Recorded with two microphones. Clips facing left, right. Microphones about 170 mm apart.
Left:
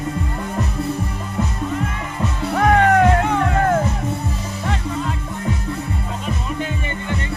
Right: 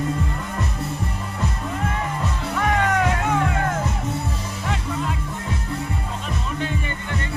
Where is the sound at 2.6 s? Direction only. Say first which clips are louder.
Left 7 dB; 50° left (ahead or behind).